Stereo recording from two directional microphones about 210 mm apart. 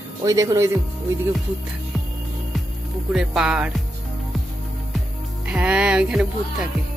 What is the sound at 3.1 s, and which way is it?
Speech, 5° right (ahead or behind).